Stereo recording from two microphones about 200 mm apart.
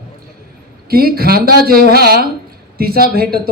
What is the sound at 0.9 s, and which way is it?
A man's voice, 50° right (ahead or behind).